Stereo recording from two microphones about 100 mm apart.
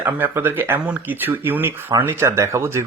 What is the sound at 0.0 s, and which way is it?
Speech, 20° right (ahead or behind).